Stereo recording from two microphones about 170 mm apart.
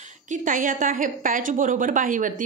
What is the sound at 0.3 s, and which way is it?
A woman's voice, 50° right (ahead or behind).